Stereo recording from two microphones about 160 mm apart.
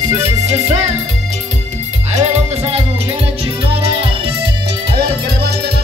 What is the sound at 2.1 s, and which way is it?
Music, 45° right (ahead or behind).